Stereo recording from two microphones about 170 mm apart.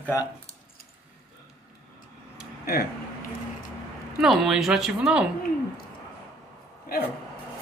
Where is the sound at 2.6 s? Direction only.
65° left (ahead or behind).